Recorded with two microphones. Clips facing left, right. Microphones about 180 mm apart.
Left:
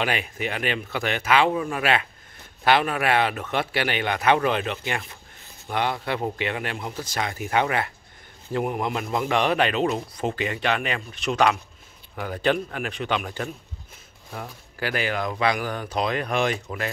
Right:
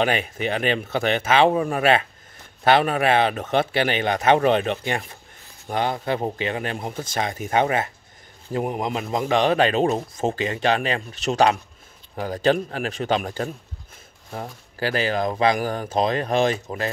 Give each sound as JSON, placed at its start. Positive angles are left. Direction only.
{"t": 0.2, "sound": "speech", "side_deg": -30}
{"t": 3.9, "sound": "speech", "side_deg": -35}
{"t": 7.0, "sound": "speech", "side_deg": -25}
{"t": 9.6, "sound": "speech", "side_deg": -40}